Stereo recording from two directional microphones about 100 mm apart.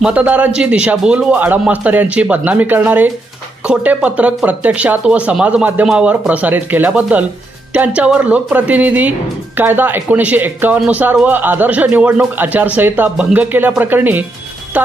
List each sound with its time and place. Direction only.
0.0 s speech: 15° right (ahead or behind)